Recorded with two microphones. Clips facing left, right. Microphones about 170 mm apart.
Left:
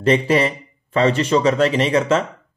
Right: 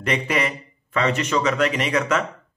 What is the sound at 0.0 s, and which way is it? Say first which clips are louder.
A man's voice: left 7 dB; 30° left (ahead or behind).